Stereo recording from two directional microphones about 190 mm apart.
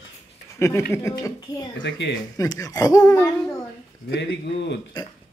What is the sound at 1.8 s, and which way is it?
Speech, 70° left (ahead or behind).